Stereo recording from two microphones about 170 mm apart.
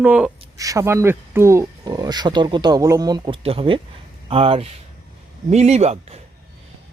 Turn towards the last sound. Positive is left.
turn(degrees=-40)  # may be behind; listen again after turning